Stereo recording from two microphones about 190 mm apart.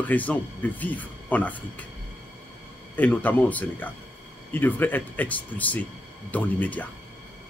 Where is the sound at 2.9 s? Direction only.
10° left (ahead or behind).